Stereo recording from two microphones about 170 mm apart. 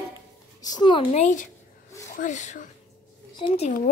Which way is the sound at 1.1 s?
45° left (ahead or behind).